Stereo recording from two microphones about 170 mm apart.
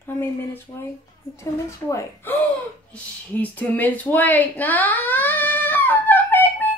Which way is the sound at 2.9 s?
10° left (ahead or behind).